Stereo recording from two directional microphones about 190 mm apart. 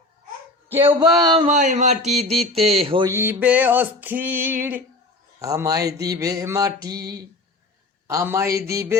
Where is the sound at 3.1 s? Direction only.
10° right (ahead or behind).